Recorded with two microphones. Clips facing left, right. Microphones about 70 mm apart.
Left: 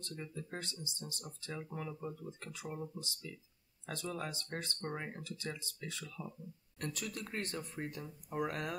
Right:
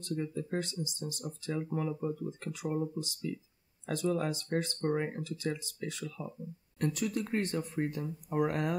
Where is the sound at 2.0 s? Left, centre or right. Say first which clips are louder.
Right 9 dB; right.